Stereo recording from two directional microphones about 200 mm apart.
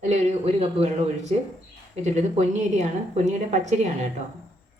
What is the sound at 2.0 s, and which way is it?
A woman's voice, 35° right (ahead or behind).